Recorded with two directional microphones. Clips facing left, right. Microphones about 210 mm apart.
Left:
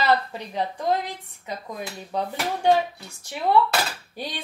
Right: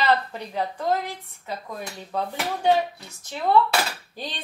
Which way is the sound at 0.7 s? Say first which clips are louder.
Left 1 dB; 15° left (ahead or behind).